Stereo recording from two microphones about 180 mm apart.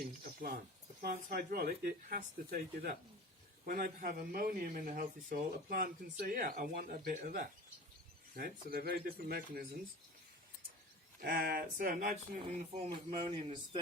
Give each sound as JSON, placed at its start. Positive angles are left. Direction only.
{"t": 1.0, "sound": "speech", "side_deg": -55}
{"t": 8.6, "sound": "speech", "side_deg": -60}
{"t": 11.2, "sound": "speech", "side_deg": -60}
{"t": 13.1, "sound": "speech", "side_deg": -25}